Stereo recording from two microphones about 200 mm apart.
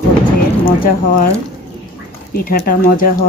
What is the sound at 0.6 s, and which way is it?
Speech, 45° left (ahead or behind).